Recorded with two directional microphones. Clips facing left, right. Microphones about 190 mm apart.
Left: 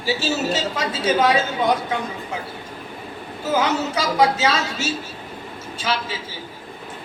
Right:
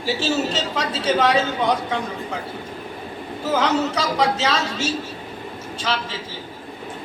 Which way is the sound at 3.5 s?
10° left (ahead or behind).